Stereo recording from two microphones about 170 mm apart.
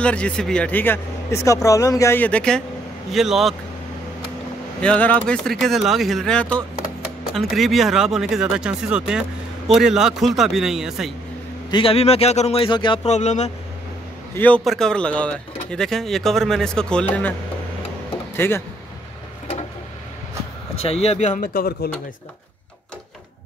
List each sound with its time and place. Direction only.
0.0 s speech: 5° left (ahead or behind)
4.8 s speech: 10° left (ahead or behind)
11.7 s speech: 35° left (ahead or behind)
13.0 s speech: 40° left (ahead or behind)
14.3 s speech: 10° left (ahead or behind)
18.3 s speech: 15° left (ahead or behind)
20.8 s speech: 35° left (ahead or behind)
21.5 s speech: 70° left (ahead or behind)